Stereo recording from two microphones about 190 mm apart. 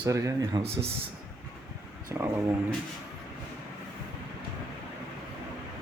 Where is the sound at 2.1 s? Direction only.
10° right (ahead or behind).